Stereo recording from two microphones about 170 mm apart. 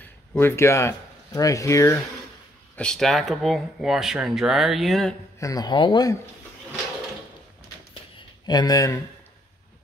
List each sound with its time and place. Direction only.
0.0 s speech: 10° left (ahead or behind)
2.7 s speech: 5° left (ahead or behind)
5.4 s speech: 20° left (ahead or behind)
7.9 s a sound: 25° left (ahead or behind)